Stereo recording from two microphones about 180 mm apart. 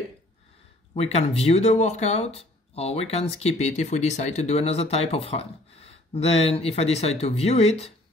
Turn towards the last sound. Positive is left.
turn(degrees=35)  # may be behind; listen again after turning